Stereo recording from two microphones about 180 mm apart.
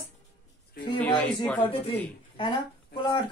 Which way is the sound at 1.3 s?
5° left (ahead or behind).